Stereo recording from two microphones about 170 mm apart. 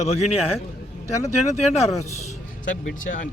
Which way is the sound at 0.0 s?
40° left (ahead or behind).